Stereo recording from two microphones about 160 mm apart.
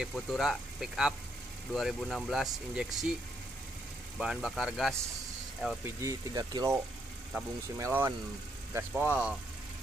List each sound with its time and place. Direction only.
0.0 s speech: centre (ahead or behind)
4.2 s speech: 5° right (ahead or behind)
5.9 s speech: 20° right (ahead or behind)
7.3 s speech: 5° right (ahead or behind)